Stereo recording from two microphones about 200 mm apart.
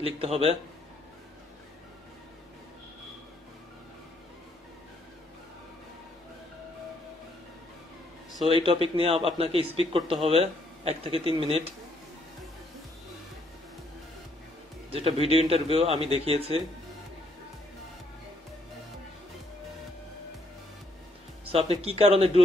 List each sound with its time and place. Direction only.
0.0 s a man's voice: 30° right (ahead or behind)
8.5 s a man's voice: 25° right (ahead or behind)
14.9 s a man's voice: 30° right (ahead or behind)
21.5 s a man's voice: 30° right (ahead or behind)